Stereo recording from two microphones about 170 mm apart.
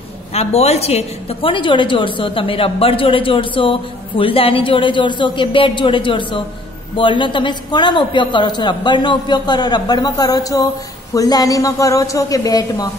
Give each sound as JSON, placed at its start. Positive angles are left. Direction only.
{"t": 0.3, "sound": "a woman's voice", "side_deg": 40}